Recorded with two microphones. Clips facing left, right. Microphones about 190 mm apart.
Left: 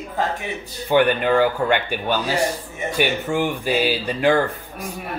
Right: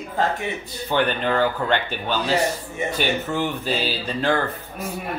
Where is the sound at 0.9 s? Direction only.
10° left (ahead or behind).